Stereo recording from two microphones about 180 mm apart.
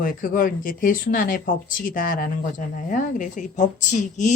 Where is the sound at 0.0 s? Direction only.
50° left (ahead or behind).